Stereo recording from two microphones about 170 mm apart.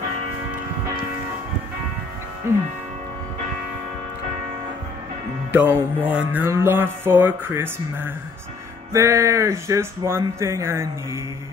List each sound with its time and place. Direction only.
2.4 s mantra: 15° right (ahead or behind)
5.5 s mantra: 10° right (ahead or behind)